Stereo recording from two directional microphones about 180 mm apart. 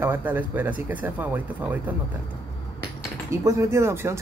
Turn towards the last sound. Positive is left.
turn(degrees=-15)  # may be behind; listen again after turning